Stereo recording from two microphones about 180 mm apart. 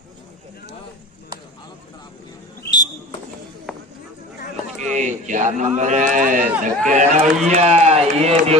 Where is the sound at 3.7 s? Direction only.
5° left (ahead or behind).